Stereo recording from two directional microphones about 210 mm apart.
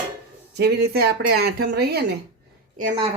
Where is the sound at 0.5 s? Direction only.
50° right (ahead or behind).